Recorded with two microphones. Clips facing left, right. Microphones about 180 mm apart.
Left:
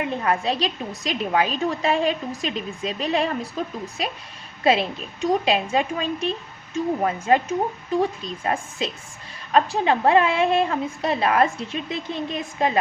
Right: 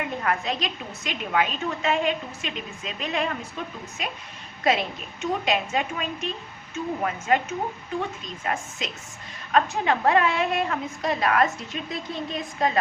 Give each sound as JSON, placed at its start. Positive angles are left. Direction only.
{"t": 0.0, "sound": "a woman's voice", "side_deg": 30}
{"t": 4.6, "sound": "a woman's voice", "side_deg": 30}